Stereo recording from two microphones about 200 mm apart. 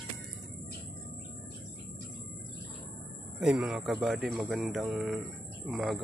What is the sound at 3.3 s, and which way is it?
Speech, 5° right (ahead or behind).